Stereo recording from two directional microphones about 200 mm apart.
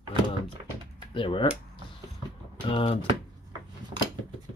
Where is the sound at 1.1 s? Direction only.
25° left (ahead or behind).